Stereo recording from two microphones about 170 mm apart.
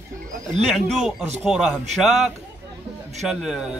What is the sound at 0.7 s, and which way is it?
Speech, centre (ahead or behind).